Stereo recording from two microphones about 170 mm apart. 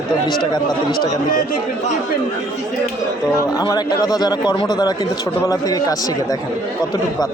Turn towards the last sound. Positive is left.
turn(degrees=20)  # may be behind; listen again after turning